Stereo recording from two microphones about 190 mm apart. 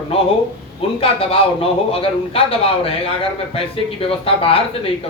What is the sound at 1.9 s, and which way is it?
A man's voice, 30° left (ahead or behind).